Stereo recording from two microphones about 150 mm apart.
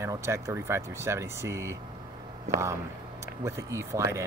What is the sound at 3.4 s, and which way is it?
Speech, 20° right (ahead or behind).